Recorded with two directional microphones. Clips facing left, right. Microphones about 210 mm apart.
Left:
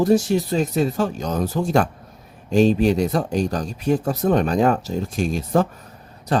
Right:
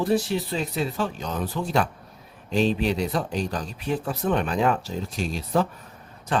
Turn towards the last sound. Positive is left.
turn(degrees=40)  # may be behind; listen again after turning